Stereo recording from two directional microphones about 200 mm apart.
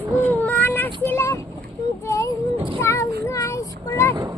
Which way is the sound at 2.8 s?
15° left (ahead or behind).